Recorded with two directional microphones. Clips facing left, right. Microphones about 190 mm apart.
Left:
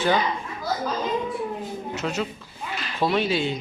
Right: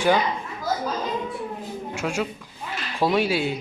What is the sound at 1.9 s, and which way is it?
Speech, 10° right (ahead or behind).